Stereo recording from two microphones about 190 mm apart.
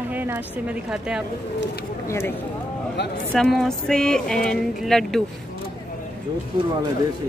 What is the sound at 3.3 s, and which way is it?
Speech, centre (ahead or behind).